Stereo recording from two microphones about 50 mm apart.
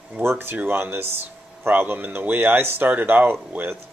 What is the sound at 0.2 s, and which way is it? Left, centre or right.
A man's voice, right.